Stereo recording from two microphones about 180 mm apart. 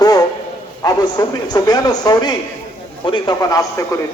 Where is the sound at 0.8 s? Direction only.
20° left (ahead or behind).